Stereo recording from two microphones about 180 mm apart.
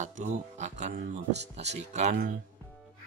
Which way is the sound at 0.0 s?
40° right (ahead or behind).